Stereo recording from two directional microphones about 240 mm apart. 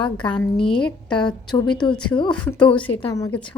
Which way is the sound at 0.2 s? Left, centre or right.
Centre.